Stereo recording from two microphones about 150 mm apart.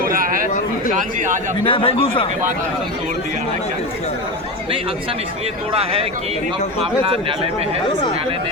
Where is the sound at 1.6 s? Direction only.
35° left (ahead or behind).